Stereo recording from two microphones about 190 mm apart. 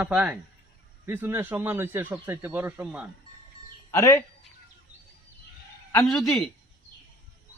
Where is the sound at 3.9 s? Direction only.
15° left (ahead or behind).